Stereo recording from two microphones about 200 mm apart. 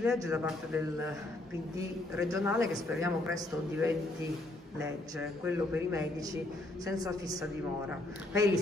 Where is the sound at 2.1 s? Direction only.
15° right (ahead or behind).